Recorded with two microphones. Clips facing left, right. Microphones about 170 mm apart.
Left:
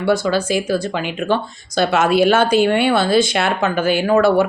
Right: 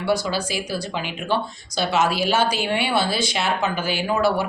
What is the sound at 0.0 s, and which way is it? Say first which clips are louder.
Speech: left 6 dB; 50° left (ahead or behind).